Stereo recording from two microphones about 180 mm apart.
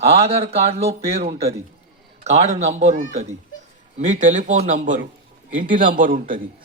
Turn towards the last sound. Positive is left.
turn(degrees=-50)  # may be behind; listen again after turning